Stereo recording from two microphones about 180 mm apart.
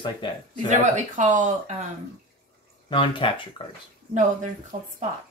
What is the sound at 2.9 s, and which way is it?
Speech, 25° left (ahead or behind).